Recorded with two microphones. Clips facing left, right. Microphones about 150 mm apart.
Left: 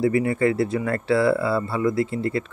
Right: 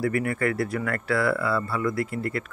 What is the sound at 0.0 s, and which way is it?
Speech, 20° left (ahead or behind).